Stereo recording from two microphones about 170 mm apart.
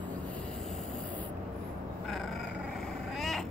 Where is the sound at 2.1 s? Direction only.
Centre (ahead or behind).